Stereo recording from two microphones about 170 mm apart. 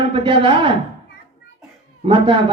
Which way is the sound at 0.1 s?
30° right (ahead or behind).